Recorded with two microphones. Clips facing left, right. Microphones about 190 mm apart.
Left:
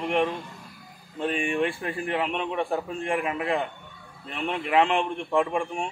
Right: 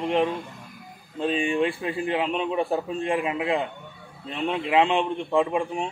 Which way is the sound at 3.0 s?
20° right (ahead or behind).